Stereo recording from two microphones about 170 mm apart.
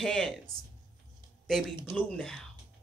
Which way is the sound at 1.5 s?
Centre (ahead or behind).